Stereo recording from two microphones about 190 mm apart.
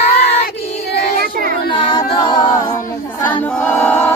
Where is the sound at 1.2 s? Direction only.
50° right (ahead or behind).